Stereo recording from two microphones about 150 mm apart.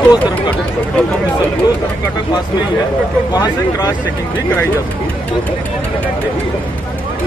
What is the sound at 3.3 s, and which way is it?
Speech, 25° left (ahead or behind).